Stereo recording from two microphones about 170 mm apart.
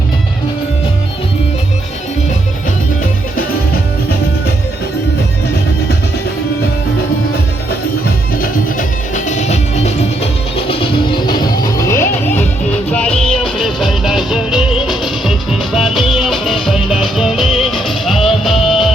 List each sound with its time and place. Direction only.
9.1 s music: 45° left (ahead or behind)
10.7 s music: 30° left (ahead or behind)
12.9 s music: 5° left (ahead or behind)